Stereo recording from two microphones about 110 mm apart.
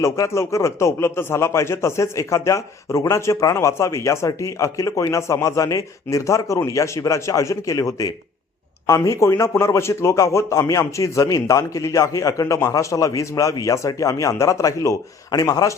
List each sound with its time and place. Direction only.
0.0 s a man's voice: 25° left (ahead or behind)